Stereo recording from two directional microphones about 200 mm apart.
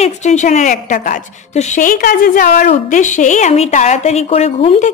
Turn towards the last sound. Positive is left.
turn(degrees=30)  # may be behind; listen again after turning